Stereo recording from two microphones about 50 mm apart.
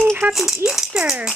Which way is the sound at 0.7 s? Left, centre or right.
Centre.